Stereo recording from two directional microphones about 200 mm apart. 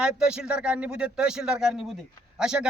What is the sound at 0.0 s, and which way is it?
Speech, 5° right (ahead or behind).